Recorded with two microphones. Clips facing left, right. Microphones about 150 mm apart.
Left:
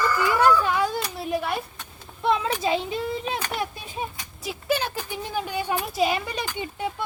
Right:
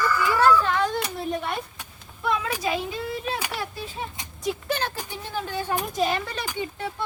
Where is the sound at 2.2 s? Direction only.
25° left (ahead or behind).